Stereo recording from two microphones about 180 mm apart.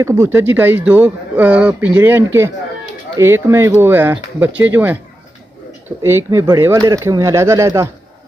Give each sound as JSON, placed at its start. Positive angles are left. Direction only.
{"t": 0.0, "sound": "speech", "side_deg": -15}